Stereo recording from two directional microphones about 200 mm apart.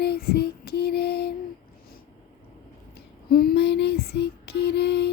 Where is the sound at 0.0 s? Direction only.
50° left (ahead or behind).